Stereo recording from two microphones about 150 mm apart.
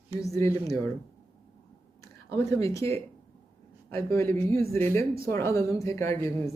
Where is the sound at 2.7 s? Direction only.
20° left (ahead or behind).